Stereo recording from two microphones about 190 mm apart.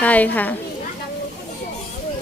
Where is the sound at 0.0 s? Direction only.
10° left (ahead or behind).